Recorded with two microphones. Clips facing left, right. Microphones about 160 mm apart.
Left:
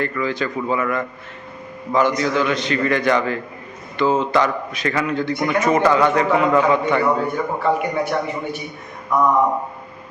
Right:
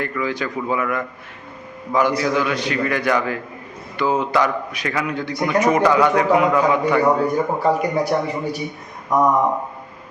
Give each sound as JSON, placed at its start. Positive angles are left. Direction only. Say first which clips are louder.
{"t": 0.0, "sound": "a man's voice", "louder": "left 1 dB", "side_deg": -10}
{"t": 7.3, "sound": "a man's voice", "louder": "right 2 dB", "side_deg": -40}
{"t": 9.1, "sound": "a sound", "louder": "right 1 dB", "side_deg": -40}